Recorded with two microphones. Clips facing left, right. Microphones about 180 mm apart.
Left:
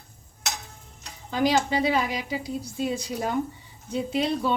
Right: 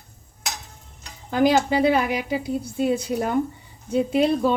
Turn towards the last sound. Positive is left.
turn(degrees=-50)  # may be behind; listen again after turning